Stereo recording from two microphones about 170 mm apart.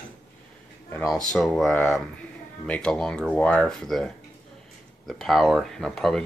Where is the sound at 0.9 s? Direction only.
5° left (ahead or behind).